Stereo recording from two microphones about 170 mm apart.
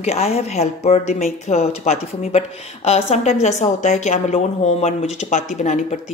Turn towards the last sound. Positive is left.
turn(degrees=45)  # may be behind; listen again after turning